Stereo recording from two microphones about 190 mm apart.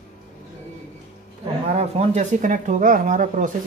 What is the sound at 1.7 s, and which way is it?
Speech, 35° right (ahead or behind).